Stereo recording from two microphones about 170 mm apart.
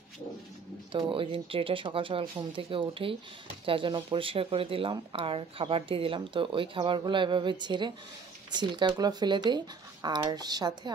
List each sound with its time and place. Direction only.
0.9 s speech: 30° right (ahead or behind)